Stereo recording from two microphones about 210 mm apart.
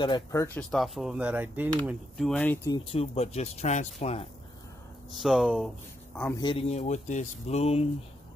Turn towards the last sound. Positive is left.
turn(degrees=30)  # may be behind; listen again after turning